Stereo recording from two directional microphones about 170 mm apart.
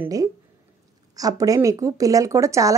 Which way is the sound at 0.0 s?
20° right (ahead or behind).